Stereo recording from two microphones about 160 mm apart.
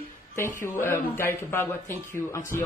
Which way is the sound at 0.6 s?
15° left (ahead or behind).